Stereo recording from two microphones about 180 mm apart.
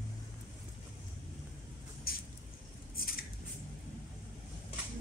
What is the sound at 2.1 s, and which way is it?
Vehicle, 55° left (ahead or behind).